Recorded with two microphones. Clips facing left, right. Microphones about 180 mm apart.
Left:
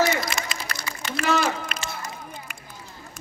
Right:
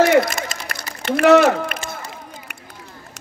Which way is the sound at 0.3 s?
45° right (ahead or behind).